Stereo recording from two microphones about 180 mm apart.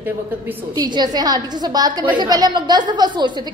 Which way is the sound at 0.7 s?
25° right (ahead or behind).